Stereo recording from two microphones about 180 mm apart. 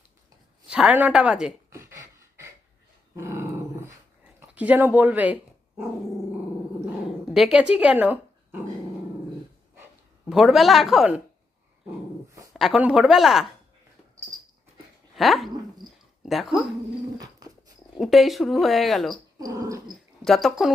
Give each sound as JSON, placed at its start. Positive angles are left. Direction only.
{"t": 0.7, "sound": "gasp", "side_deg": -5}
{"t": 4.4, "sound": "dog", "side_deg": -10}
{"t": 7.3, "sound": "speech", "side_deg": -5}
{"t": 10.2, "sound": "speech", "side_deg": 0}
{"t": 12.5, "sound": "speech", "side_deg": 0}
{"t": 15.1, "sound": "speech", "side_deg": 0}
{"t": 17.9, "sound": "speech", "side_deg": 0}
{"t": 19.1, "sound": "dog", "side_deg": -20}
{"t": 20.2, "sound": "speech", "side_deg": 0}